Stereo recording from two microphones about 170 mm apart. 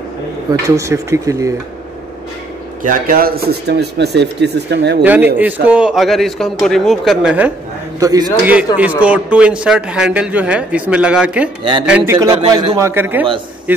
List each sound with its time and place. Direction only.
0.5 s speech: 20° right (ahead or behind)
2.8 s speech: 50° right (ahead or behind); by 5.0 s 85° right
5.0 s speech: 10° right (ahead or behind)
8.0 s speech: 20° right (ahead or behind)
8.7 s speech: 10° right (ahead or behind)
12.1 s speech: 20° right (ahead or behind)